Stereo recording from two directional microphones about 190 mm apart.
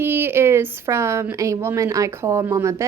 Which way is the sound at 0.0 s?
10° right (ahead or behind).